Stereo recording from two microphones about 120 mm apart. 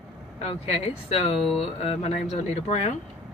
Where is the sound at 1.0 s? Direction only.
60° left (ahead or behind).